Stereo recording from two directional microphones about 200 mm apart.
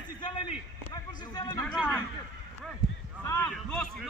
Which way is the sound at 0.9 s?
20° left (ahead or behind).